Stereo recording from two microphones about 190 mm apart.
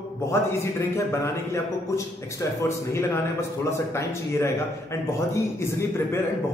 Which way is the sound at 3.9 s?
15° left (ahead or behind).